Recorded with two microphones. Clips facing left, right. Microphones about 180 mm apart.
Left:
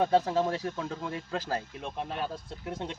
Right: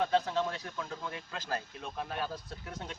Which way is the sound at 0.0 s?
35° left (ahead or behind).